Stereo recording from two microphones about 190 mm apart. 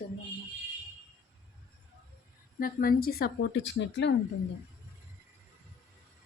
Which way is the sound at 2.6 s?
50° left (ahead or behind).